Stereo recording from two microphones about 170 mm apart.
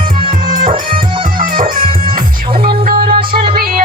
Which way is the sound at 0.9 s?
55° right (ahead or behind).